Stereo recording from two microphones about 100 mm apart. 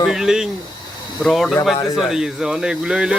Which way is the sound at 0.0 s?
5° right (ahead or behind).